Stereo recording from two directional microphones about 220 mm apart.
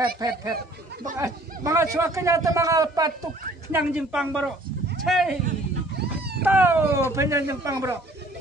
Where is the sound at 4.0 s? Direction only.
5° right (ahead or behind).